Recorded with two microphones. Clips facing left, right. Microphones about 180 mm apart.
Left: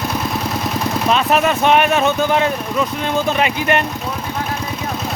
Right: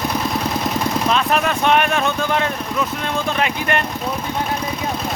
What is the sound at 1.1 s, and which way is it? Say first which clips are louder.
Speech: left 6 dB; 5° left (ahead or behind).